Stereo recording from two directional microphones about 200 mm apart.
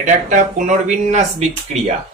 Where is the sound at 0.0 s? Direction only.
40° right (ahead or behind).